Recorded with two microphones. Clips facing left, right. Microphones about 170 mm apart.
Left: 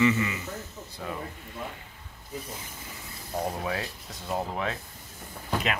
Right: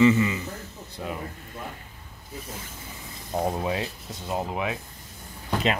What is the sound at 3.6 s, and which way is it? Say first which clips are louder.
Speech: right 4 dB; 20° right (ahead or behind).